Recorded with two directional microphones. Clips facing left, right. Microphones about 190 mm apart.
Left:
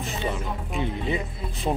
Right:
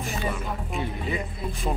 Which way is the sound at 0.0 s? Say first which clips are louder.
Left 1 dB; 25° left (ahead or behind).